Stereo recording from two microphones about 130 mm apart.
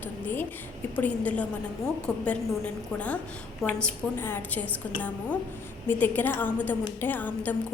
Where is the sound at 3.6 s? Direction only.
10° left (ahead or behind).